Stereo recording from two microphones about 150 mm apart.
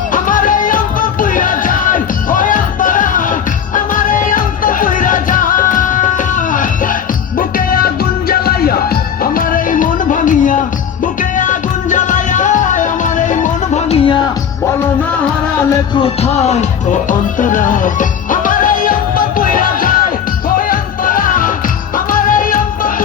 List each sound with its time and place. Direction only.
0.1 s music: 65° left (ahead or behind)
7.3 s music: 75° left (ahead or behind)
8.3 s music: 90° left
9.2 s music: 70° left (ahead or behind); by 14.0 s 50° left (ahead or behind)
16.0 s music: 45° left (ahead or behind); by 22.9 s 70° left (ahead or behind)